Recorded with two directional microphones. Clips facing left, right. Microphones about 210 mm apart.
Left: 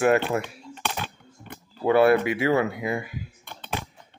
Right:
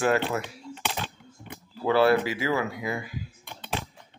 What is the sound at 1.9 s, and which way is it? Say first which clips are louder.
Speech: left 3 dB; 20° left (ahead or behind).